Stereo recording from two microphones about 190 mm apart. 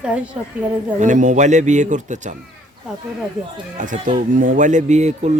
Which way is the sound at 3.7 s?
45° right (ahead or behind).